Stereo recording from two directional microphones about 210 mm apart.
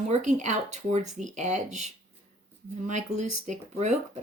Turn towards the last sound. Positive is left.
turn(degrees=-35)  # may be behind; listen again after turning